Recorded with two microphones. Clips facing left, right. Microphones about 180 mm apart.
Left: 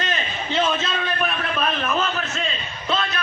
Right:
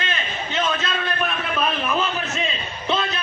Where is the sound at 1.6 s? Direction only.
5° right (ahead or behind).